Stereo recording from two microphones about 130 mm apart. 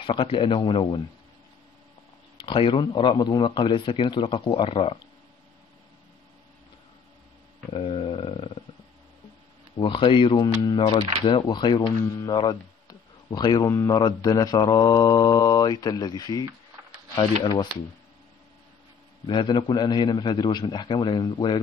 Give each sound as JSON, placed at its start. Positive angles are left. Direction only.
{"t": 0.0, "sound": "a man's voice", "side_deg": 40}
{"t": 2.4, "sound": "a man's voice", "side_deg": 40}
{"t": 7.7, "sound": "a sound", "side_deg": 50}
{"t": 9.8, "sound": "a man's voice", "side_deg": 40}
{"t": 12.2, "sound": "a sound", "side_deg": 30}
{"t": 13.7, "sound": "mantra", "side_deg": 25}
{"t": 19.2, "sound": "a man's voice", "side_deg": 40}